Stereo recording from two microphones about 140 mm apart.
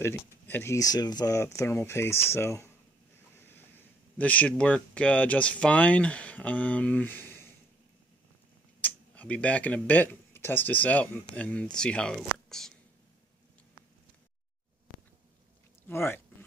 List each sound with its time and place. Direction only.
0.0 s speech: 15° left (ahead or behind)
3.3 s a sound: 15° left (ahead or behind)
4.2 s speech: 10° left (ahead or behind)
8.8 s speech: 10° left (ahead or behind)
15.9 s speech: 15° left (ahead or behind)